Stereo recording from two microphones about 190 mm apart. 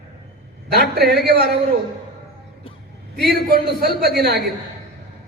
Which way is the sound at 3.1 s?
55° right (ahead or behind).